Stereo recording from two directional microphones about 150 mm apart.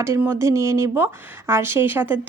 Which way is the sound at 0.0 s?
15° right (ahead or behind).